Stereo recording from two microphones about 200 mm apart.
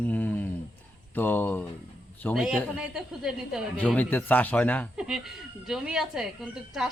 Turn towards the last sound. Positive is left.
turn(degrees=0)  # may be behind; listen again after turning